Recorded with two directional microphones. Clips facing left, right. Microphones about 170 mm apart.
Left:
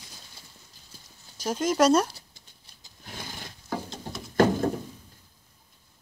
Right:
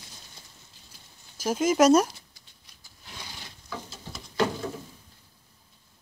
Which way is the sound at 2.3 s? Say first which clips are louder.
Left 2 dB; 25° left (ahead or behind).